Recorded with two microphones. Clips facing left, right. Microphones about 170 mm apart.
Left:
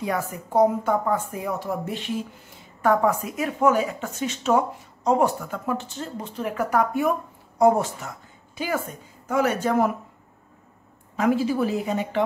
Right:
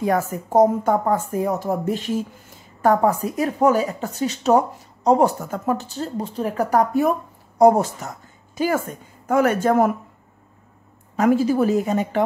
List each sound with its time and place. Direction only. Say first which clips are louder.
0.0 s speech: right 6 dB; 45° right (ahead or behind)
11.1 s speech: right 4 dB; 45° right (ahead or behind)